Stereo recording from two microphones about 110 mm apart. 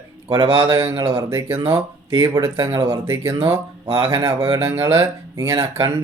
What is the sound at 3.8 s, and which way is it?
Speech, 45° right (ahead or behind).